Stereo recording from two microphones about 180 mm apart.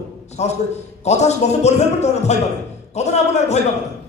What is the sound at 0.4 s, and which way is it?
A man's voice, 40° left (ahead or behind).